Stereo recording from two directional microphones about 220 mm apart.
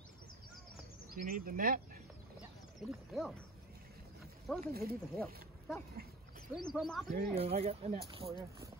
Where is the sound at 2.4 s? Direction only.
Centre (ahead or behind).